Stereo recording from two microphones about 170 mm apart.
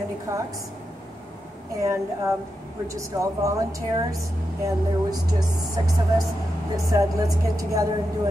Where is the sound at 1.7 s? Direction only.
20° right (ahead or behind).